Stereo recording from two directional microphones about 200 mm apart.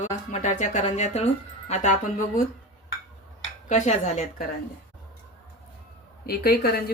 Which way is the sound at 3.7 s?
35° left (ahead or behind).